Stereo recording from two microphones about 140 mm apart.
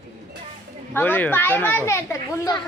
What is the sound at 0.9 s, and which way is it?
A child's voice, 15° left (ahead or behind).